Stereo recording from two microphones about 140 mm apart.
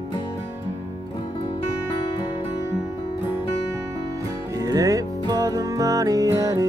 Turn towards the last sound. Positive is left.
turn(degrees=-25)  # may be behind; listen again after turning